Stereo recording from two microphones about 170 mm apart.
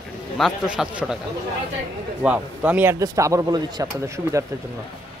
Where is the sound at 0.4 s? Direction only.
5° right (ahead or behind).